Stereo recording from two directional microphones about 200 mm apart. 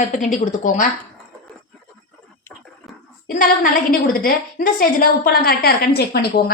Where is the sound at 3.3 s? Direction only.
45° left (ahead or behind).